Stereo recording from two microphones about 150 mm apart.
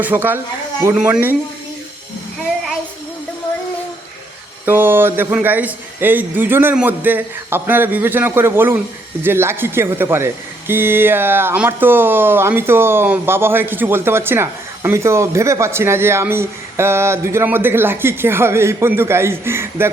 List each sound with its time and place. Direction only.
0.0 s speech: 10° right (ahead or behind)
4.6 s speech: 15° right (ahead or behind)